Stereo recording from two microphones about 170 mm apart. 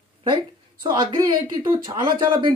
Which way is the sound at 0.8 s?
30° right (ahead or behind).